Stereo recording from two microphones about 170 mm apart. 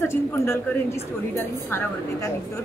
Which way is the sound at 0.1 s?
15° left (ahead or behind).